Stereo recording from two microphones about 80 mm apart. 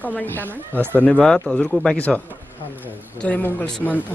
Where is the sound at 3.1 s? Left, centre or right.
Centre.